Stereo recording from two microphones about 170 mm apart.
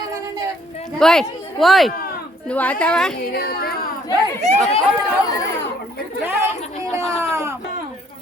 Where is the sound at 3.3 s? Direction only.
65° left (ahead or behind).